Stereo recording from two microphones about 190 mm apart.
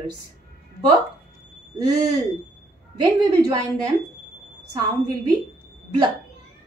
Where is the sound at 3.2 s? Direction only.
20° right (ahead or behind).